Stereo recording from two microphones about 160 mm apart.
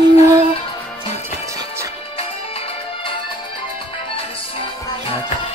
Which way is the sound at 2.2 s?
35° left (ahead or behind).